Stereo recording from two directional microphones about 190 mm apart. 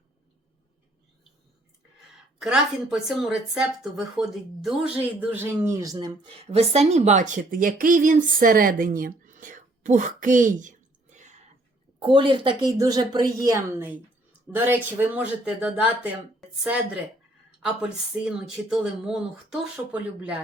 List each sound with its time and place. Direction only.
2.4 s speech: centre (ahead or behind); by 11.3 s 40° right (ahead or behind)
11.9 s a woman's voice: 25° right (ahead or behind); by 20.3 s 5° right (ahead or behind)